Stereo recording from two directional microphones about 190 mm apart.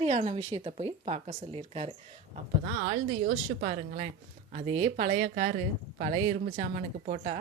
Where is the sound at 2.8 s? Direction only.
50° right (ahead or behind).